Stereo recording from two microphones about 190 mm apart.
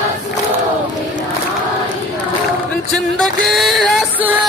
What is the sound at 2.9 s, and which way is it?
Music, centre (ahead or behind).